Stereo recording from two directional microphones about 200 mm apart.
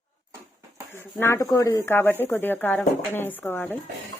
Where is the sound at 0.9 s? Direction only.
10° left (ahead or behind).